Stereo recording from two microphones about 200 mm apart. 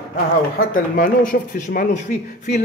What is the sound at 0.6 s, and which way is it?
A man's voice, 45° left (ahead or behind).